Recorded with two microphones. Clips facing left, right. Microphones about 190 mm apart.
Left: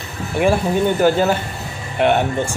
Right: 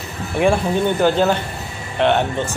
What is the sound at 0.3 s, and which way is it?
Speech, centre (ahead or behind).